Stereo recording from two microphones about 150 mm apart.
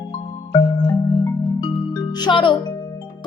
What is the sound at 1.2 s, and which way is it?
Music, 25° left (ahead or behind).